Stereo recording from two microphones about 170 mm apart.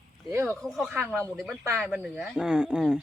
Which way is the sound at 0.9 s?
15° right (ahead or behind).